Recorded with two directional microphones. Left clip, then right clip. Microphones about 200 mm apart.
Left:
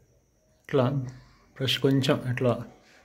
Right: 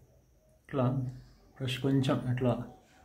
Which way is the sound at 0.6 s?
40° left (ahead or behind).